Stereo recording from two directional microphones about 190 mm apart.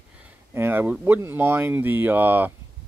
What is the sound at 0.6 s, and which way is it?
Speech, 10° right (ahead or behind).